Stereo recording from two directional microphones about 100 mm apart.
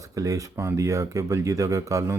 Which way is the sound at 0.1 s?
35° right (ahead or behind).